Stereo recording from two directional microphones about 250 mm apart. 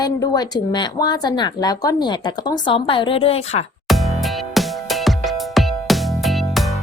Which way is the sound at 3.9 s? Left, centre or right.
Centre.